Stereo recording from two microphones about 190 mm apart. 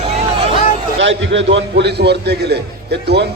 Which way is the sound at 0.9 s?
75° right (ahead or behind).